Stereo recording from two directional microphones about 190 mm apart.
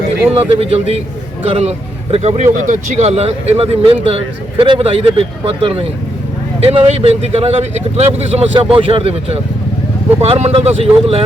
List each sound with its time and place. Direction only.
0.3 s speech: 30° right (ahead or behind)